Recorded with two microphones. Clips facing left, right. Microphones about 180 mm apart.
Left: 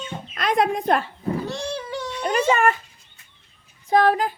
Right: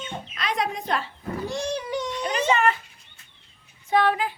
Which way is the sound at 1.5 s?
15° right (ahead or behind).